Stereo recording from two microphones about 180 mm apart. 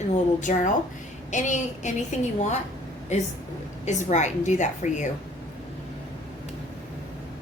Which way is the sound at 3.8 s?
40° left (ahead or behind).